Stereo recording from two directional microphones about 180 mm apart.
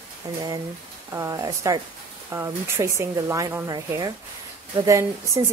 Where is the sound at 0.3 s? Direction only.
20° right (ahead or behind).